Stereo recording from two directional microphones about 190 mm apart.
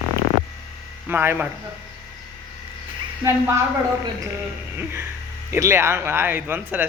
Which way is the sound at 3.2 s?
15° right (ahead or behind).